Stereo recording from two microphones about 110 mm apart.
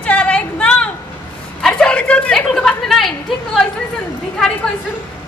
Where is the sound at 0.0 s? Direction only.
10° left (ahead or behind).